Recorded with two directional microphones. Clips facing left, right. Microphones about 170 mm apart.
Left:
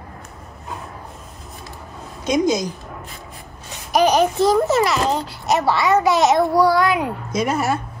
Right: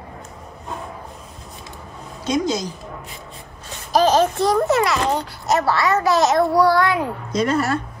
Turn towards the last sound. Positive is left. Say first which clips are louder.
# right 1 dB
turn(degrees=10)  # may be behind; listen again after turning